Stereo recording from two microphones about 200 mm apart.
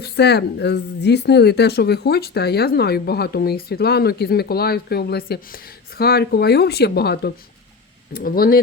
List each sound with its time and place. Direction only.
0.0 s speech: 55° left (ahead or behind)